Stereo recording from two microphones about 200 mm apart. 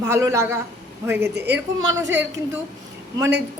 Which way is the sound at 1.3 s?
55° right (ahead or behind).